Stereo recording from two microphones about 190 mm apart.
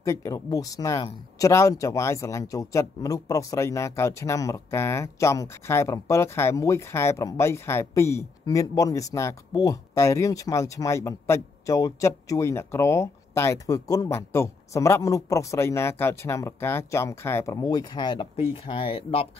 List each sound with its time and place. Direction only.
0.0 s speech: 15° left (ahead or behind)